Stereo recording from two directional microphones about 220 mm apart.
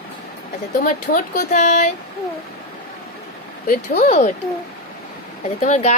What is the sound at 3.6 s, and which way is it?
Speech, 40° left (ahead or behind).